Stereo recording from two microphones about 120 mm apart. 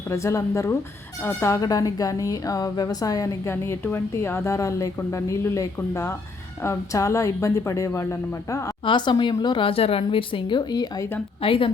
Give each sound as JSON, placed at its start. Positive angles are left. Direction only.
{"t": 0.1, "sound": "speech", "side_deg": 25}
{"t": 8.8, "sound": "speech", "side_deg": 40}
{"t": 11.4, "sound": "speech", "side_deg": 50}